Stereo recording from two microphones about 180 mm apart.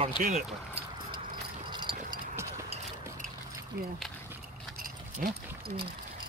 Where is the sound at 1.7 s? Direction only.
25° right (ahead or behind).